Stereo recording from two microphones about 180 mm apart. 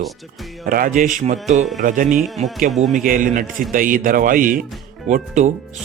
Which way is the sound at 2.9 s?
50° right (ahead or behind).